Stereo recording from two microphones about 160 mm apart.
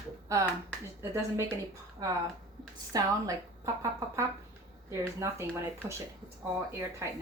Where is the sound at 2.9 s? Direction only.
20° right (ahead or behind).